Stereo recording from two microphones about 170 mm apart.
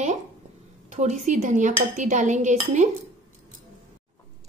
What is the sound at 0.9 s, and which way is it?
A woman's voice, 45° right (ahead or behind).